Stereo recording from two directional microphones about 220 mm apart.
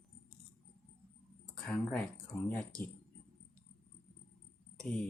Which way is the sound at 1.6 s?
5° left (ahead or behind).